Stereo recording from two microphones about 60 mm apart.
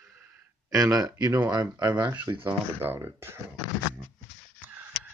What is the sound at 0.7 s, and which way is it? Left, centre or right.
Speech, right.